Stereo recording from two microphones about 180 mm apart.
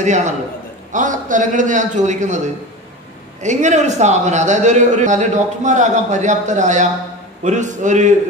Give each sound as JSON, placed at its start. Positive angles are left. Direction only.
{"t": 0.0, "sound": "a man's voice", "side_deg": -40}